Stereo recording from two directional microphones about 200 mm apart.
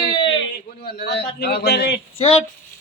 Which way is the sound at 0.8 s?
50° left (ahead or behind).